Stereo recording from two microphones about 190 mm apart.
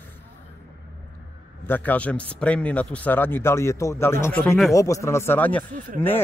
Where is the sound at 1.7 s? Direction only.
10° left (ahead or behind).